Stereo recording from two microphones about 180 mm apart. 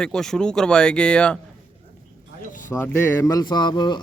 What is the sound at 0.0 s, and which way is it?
Speech, 5° left (ahead or behind).